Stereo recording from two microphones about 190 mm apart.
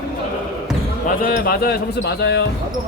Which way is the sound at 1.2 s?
50° left (ahead or behind).